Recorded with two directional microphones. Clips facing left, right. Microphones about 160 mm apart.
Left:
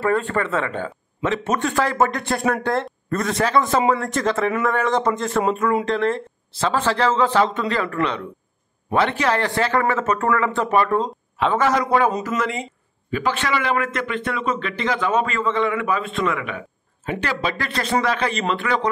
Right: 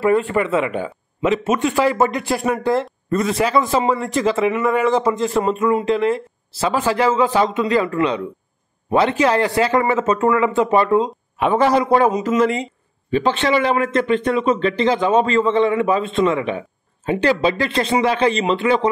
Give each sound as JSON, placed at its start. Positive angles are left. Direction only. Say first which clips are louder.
{"t": 0.0, "sound": "a man's voice", "louder": "right 4 dB", "side_deg": -15}
{"t": 11.5, "sound": "a man's voice", "louder": "right 4 dB", "side_deg": -30}